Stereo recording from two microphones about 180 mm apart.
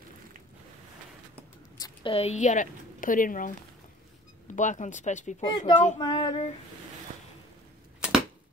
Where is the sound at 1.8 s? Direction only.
30° left (ahead or behind); by 3.5 s 50° left (ahead or behind).